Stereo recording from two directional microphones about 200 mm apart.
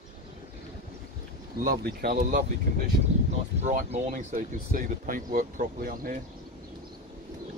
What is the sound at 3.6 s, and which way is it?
Speech, 35° right (ahead or behind).